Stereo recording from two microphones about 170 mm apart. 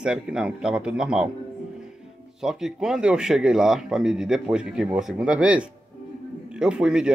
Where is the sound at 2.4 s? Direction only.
Centre (ahead or behind).